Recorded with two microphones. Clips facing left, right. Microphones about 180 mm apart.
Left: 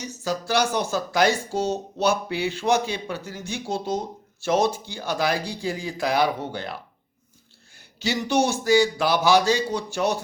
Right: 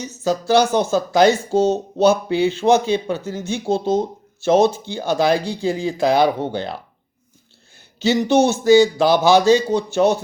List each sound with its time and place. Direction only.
0.0 s speech: 25° right (ahead or behind)
7.9 s speech: 25° right (ahead or behind)